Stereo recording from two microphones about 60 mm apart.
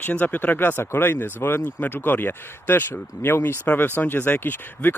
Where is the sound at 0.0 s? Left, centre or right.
Left.